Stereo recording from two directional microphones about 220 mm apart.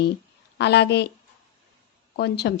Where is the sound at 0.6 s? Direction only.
50° left (ahead or behind).